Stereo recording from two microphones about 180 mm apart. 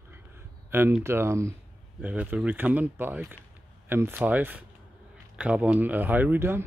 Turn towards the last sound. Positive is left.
turn(degrees=-10)  # may be behind; listen again after turning